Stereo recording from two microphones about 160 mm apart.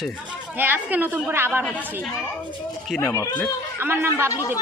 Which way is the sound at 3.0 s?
15° left (ahead or behind).